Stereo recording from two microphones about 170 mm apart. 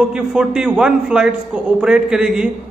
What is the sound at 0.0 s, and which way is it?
A man's voice, 5° right (ahead or behind).